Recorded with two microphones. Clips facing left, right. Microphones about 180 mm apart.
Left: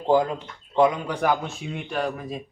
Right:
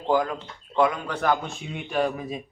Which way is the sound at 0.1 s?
25° left (ahead or behind).